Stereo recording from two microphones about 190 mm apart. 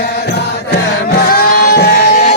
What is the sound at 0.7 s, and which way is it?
Music, 65° left (ahead or behind).